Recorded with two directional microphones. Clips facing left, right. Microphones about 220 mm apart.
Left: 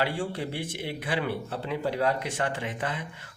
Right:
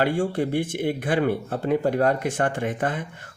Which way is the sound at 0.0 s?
50° right (ahead or behind).